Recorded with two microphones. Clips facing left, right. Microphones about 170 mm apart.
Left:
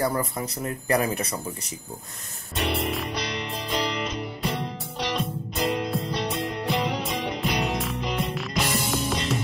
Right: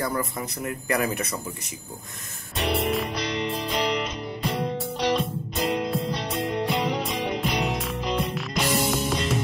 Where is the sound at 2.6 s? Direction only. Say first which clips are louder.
Right 2 dB; centre (ahead or behind).